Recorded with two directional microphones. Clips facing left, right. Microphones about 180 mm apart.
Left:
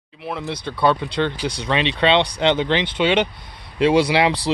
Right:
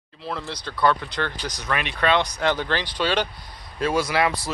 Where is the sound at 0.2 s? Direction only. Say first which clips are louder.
Left 4 dB; 20° left (ahead or behind).